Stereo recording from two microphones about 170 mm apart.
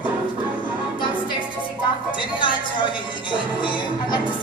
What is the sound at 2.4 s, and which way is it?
Speech, 30° left (ahead or behind).